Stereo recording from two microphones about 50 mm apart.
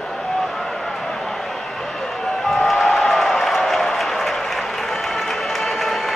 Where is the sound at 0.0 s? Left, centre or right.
Centre.